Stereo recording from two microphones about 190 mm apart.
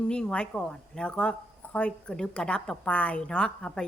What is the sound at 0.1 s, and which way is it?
A woman's voice, 5° left (ahead or behind).